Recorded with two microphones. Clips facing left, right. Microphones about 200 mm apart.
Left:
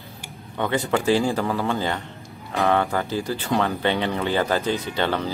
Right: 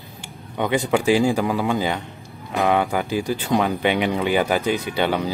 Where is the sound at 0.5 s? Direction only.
15° right (ahead or behind).